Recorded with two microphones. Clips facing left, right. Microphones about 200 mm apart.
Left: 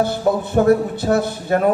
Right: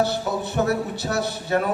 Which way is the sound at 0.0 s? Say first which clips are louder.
Left 5 dB; 50° left (ahead or behind).